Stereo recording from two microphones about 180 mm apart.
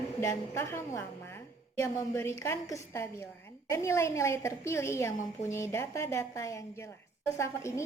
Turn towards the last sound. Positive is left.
turn(degrees=15)  # may be behind; listen again after turning